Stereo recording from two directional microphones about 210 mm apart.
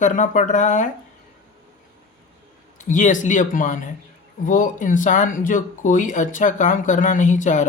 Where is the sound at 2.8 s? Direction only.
35° left (ahead or behind).